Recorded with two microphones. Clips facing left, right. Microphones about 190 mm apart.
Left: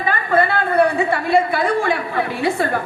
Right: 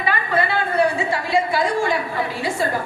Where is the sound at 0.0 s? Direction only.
50° left (ahead or behind).